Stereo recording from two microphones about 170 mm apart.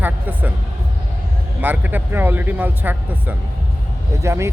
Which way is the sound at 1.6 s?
10° right (ahead or behind).